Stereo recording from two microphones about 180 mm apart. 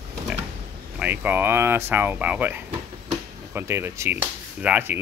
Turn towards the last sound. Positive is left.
turn(degrees=-10)  # may be behind; listen again after turning